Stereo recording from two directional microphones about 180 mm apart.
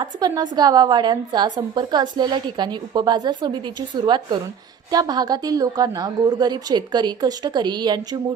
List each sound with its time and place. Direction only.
0.0 s a woman's voice: 20° right (ahead or behind)